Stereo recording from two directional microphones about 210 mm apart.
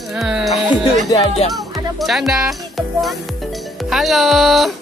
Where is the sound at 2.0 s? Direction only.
Centre (ahead or behind).